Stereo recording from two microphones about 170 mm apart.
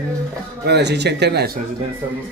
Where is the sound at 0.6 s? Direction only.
85° right.